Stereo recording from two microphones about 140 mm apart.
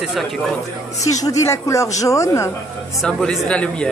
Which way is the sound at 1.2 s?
20° left (ahead or behind).